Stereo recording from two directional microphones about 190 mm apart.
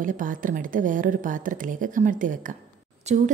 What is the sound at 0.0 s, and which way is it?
A woman's voice, 45° right (ahead or behind).